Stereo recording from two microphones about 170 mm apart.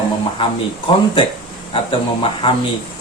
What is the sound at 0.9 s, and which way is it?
Speech, 30° left (ahead or behind).